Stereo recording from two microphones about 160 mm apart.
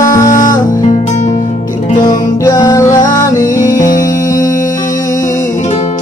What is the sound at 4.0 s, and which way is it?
Music, 20° left (ahead or behind).